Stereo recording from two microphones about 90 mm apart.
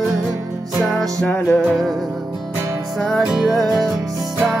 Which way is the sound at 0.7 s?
Centre (ahead or behind).